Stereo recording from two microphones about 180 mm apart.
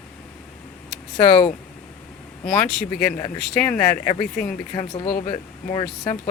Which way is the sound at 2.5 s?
5° left (ahead or behind).